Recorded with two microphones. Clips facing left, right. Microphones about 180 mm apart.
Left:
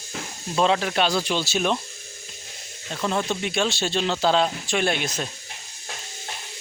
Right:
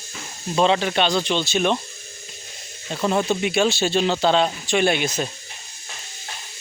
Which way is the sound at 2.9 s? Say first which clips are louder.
Right 4 dB; 10° right (ahead or behind).